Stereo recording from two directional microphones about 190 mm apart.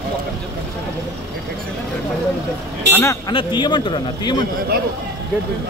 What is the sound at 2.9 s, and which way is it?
Speech, 15° left (ahead or behind).